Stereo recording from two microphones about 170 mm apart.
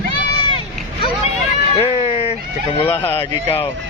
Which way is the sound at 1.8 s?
35° left (ahead or behind).